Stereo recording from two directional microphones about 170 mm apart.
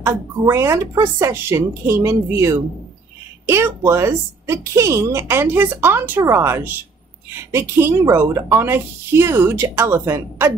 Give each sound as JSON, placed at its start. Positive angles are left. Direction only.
{"t": 0.0, "sound": "a woman's voice", "side_deg": -15}